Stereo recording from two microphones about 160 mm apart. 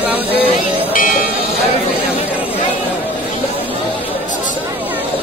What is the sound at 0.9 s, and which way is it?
Music, 60° left (ahead or behind).